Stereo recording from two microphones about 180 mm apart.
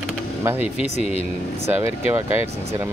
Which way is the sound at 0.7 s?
35° left (ahead or behind).